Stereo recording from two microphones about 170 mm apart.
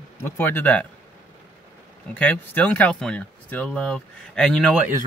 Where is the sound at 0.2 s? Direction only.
10° left (ahead or behind).